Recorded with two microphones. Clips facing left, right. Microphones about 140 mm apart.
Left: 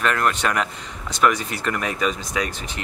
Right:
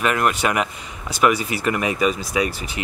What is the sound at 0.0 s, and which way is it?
Speech, 10° right (ahead or behind).